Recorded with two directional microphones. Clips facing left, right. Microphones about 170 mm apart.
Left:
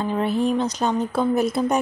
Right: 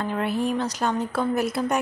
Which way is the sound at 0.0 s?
20° left (ahead or behind).